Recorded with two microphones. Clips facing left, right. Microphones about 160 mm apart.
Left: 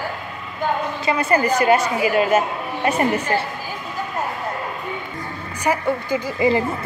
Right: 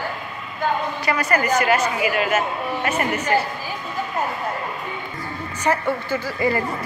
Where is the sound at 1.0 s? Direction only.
25° left (ahead or behind).